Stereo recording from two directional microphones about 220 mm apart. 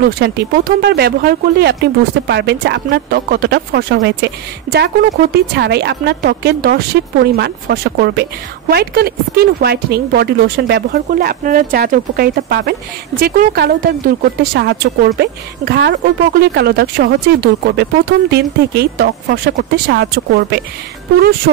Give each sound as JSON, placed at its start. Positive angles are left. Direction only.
{"t": 0.2, "sound": "speech", "side_deg": -50}